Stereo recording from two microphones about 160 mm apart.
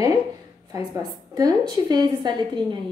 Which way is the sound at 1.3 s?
25° right (ahead or behind).